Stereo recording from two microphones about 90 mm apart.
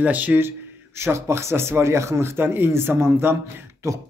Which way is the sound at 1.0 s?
30° right (ahead or behind).